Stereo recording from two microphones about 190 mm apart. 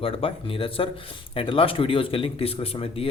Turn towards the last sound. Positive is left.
turn(degrees=30)  # may be behind; listen again after turning